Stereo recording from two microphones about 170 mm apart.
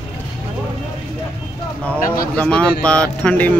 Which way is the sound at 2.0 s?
55° left (ahead or behind).